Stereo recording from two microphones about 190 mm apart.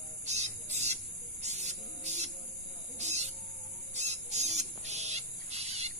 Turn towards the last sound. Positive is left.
turn(degrees=-35)  # may be behind; listen again after turning